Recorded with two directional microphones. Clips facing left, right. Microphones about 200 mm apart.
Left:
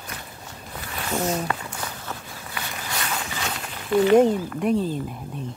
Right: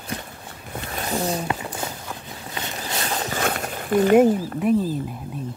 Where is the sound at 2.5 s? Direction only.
25° right (ahead or behind); by 4.2 s 45° right (ahead or behind).